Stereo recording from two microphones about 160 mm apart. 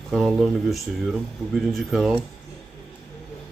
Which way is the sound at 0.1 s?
Centre (ahead or behind).